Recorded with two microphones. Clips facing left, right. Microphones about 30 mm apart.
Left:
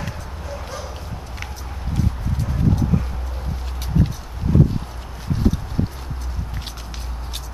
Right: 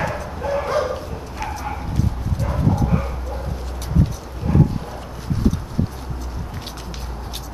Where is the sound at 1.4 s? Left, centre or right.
Centre.